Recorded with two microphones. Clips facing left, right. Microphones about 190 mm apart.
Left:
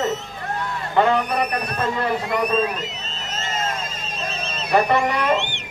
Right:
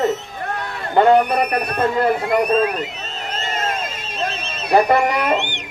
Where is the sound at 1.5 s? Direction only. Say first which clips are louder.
Right 5 dB; 55° right (ahead or behind).